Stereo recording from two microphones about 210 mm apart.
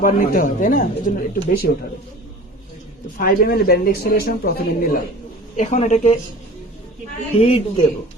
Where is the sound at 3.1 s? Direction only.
45° left (ahead or behind).